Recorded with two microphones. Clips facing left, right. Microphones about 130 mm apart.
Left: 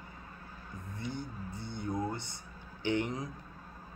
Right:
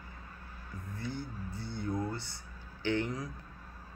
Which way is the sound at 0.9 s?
20° left (ahead or behind).